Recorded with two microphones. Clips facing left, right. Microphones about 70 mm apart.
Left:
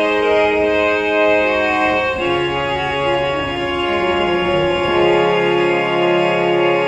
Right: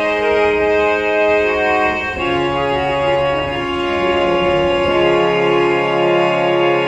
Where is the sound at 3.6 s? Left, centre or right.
Centre.